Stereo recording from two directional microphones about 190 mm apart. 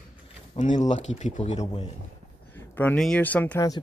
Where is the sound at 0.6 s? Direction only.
35° left (ahead or behind).